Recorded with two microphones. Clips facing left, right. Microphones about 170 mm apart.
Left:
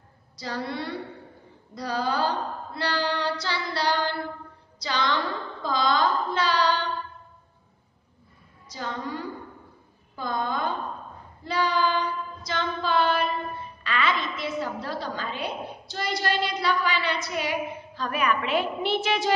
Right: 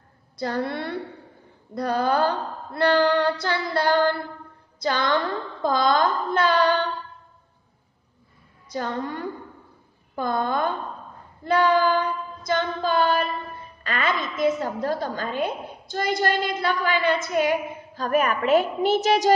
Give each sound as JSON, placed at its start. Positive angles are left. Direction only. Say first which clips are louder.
{"t": 0.4, "sound": "a woman's voice", "louder": "right 5 dB", "side_deg": -55}
{"t": 8.6, "sound": "a woman's voice", "louder": "right 5 dB", "side_deg": -55}
{"t": 11.4, "sound": "child singing", "louder": "right 6 dB", "side_deg": -55}
{"t": 13.8, "sound": "a woman's voice", "louder": "right 1 dB", "side_deg": -45}